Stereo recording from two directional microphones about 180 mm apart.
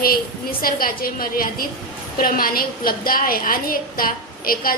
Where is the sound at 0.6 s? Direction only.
55° left (ahead or behind).